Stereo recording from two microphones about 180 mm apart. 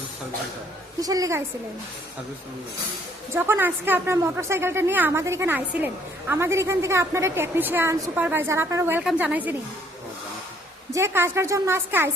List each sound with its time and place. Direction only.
1.0 s a woman's voice: 20° right (ahead or behind)
3.3 s speech: 10° right (ahead or behind)
10.9 s speech: 15° right (ahead or behind)